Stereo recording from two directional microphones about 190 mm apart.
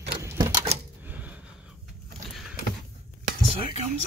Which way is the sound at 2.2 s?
Centre (ahead or behind).